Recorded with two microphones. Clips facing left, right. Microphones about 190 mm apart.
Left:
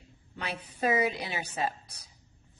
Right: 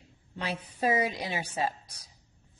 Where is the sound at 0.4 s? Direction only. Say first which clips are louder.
Right 1 dB; 30° right (ahead or behind).